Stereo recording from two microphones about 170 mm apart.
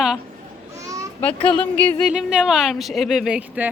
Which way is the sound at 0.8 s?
20° right (ahead or behind).